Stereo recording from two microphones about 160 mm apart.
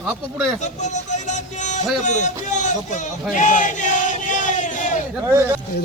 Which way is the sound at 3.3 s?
50° left (ahead or behind).